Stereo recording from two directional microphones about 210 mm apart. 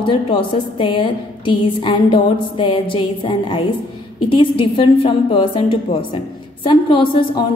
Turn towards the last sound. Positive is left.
turn(degrees=25)  # may be behind; listen again after turning